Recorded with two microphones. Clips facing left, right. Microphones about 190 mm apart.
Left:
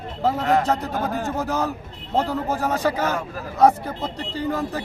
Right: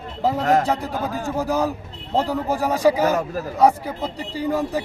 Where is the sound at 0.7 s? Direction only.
10° right (ahead or behind).